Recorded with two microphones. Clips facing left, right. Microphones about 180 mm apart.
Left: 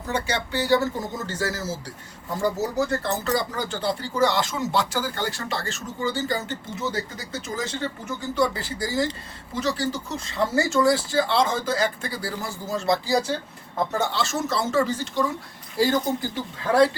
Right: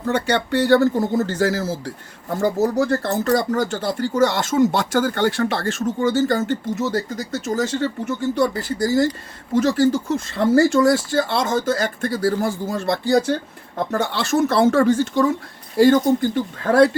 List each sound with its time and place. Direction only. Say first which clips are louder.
0.1 s speech: right 7 dB; 60° right (ahead or behind)
2.6 s speech: right 5 dB; 55° right (ahead or behind)